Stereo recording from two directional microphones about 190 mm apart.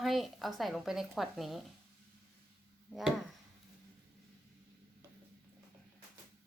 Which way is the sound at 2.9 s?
5° left (ahead or behind).